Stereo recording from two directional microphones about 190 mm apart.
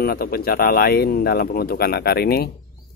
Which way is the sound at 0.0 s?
55° left (ahead or behind).